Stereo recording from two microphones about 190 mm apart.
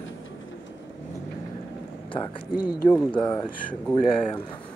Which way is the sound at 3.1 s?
20° left (ahead or behind).